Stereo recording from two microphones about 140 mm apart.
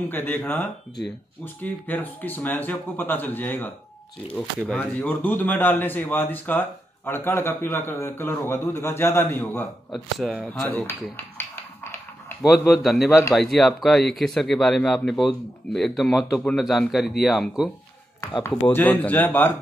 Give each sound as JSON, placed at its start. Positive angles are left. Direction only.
{"t": 0.1, "sound": "a man's voice", "side_deg": 15}
{"t": 9.9, "sound": "speech", "side_deg": 0}
{"t": 11.1, "sound": "music", "side_deg": 15}
{"t": 12.4, "sound": "speech", "side_deg": 0}
{"t": 18.7, "sound": "a man's voice", "side_deg": 10}